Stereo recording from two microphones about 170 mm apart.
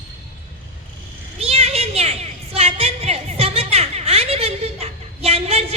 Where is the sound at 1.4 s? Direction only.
40° right (ahead or behind).